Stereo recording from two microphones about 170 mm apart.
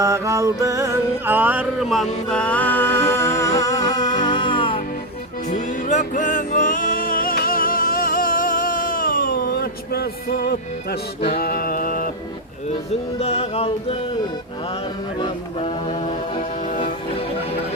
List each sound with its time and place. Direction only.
0.0 s music: 20° right (ahead or behind); by 4.8 s 30° left (ahead or behind)
5.5 s music: 45° left (ahead or behind); by 11.0 s 70° left (ahead or behind)
11.3 s mantra: 60° left (ahead or behind)
13.1 s music: 35° left (ahead or behind)
15.2 s speech: 25° left (ahead or behind)
16.4 s music: 50° left (ahead or behind)